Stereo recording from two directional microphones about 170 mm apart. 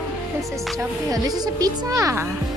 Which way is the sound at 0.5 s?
Centre (ahead or behind).